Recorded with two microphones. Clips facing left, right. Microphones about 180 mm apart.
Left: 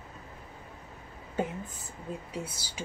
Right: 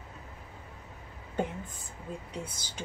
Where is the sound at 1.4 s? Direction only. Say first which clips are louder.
Left 1 dB; 5° left (ahead or behind).